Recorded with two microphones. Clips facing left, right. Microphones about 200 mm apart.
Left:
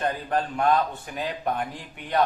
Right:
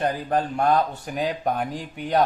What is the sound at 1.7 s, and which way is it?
Speech, 40° right (ahead or behind).